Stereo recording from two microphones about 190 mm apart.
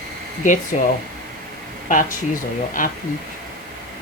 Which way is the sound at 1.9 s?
45° left (ahead or behind).